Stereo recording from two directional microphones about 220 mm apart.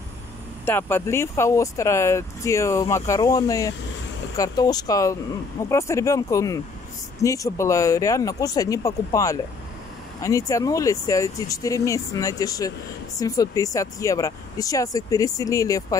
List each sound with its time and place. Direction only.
0.7 s speech: 10° left (ahead or behind)